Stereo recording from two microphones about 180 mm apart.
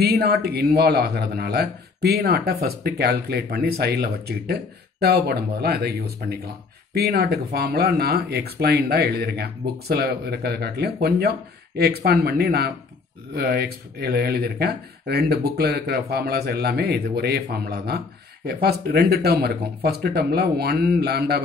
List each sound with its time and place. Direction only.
0.0 s speech: 60° right (ahead or behind)